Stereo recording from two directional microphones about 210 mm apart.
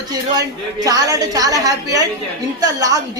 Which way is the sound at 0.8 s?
15° right (ahead or behind).